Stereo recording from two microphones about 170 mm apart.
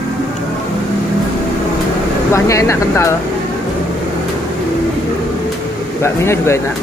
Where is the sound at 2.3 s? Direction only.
15° left (ahead or behind).